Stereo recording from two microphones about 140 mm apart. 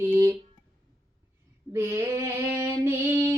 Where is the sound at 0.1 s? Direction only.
20° right (ahead or behind).